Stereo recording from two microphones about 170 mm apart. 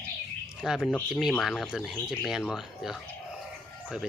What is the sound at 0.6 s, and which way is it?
Speech, centre (ahead or behind).